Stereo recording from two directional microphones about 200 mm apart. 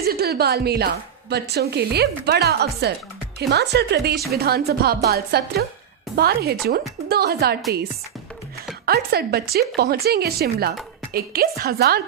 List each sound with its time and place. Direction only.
0.0 s a woman's voice: 50° right (ahead or behind)
8.8 s a woman's voice: 50° right (ahead or behind)